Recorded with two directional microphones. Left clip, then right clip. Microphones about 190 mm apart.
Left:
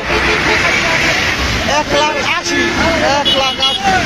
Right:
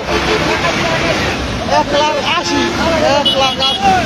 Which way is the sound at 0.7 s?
50° right (ahead or behind).